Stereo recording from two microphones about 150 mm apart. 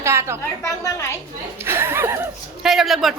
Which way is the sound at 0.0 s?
15° right (ahead or behind).